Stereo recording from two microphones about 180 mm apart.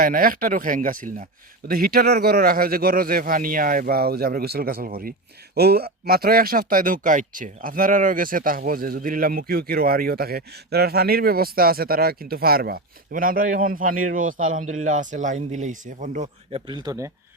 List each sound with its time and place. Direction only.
0.0 s speech: 55° right (ahead or behind); by 17.1 s 20° right (ahead or behind)